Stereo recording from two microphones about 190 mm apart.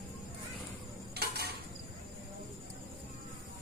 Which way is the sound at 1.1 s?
55° right (ahead or behind).